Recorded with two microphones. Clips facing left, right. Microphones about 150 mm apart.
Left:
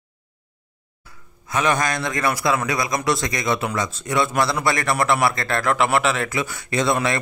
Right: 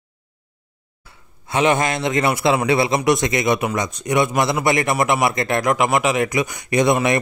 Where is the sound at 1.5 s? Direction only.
25° right (ahead or behind).